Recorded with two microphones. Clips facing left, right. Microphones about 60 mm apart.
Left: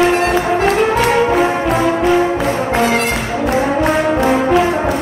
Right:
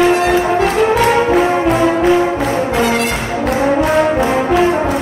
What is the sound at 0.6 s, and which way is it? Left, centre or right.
Music, left.